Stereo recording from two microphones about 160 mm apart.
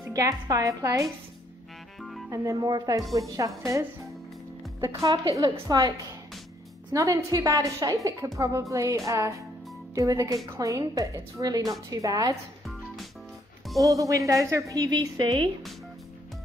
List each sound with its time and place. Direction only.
0.0 s a woman's voice: 20° right (ahead or behind)
2.0 s music: centre (ahead or behind)
2.2 s a woman's voice: 20° right (ahead or behind)
13.8 s a woman's voice: 20° right (ahead or behind)